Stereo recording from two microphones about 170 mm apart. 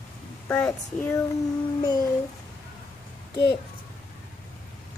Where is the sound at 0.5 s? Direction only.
10° left (ahead or behind).